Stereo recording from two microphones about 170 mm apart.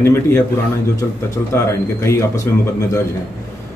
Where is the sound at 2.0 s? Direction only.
15° left (ahead or behind).